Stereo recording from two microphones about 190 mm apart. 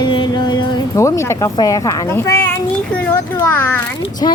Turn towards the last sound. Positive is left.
turn(degrees=20)  # may be behind; listen again after turning